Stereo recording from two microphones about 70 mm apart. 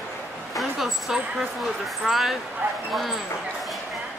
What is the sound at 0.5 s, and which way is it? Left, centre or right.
Speech, centre.